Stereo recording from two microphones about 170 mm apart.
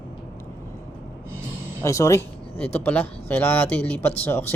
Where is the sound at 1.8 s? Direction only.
15° left (ahead or behind).